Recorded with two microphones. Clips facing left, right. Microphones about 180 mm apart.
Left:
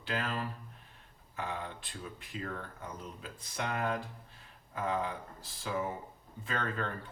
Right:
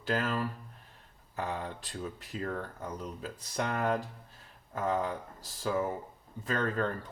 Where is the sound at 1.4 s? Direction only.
40° right (ahead or behind).